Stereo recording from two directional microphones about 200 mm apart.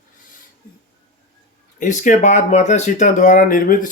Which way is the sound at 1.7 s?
40° left (ahead or behind).